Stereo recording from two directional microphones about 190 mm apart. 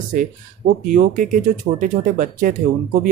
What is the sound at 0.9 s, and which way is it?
Speech, 45° right (ahead or behind).